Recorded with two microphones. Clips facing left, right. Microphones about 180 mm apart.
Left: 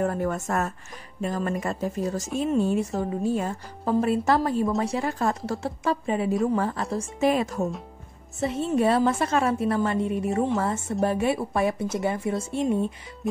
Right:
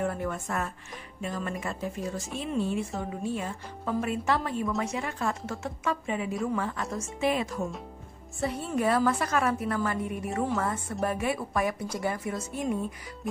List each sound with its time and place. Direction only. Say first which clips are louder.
0.0 s a woman's voice: left 5 dB; 40° left (ahead or behind)
8.4 s a woman's voice: left 5 dB; 25° left (ahead or behind)